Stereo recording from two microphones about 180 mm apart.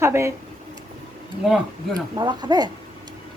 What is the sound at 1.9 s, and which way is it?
Speech, 25° right (ahead or behind).